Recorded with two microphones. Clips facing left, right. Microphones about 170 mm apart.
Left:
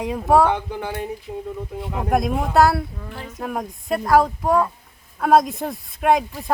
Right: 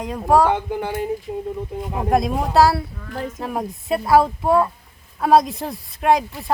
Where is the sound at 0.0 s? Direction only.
5° left (ahead or behind).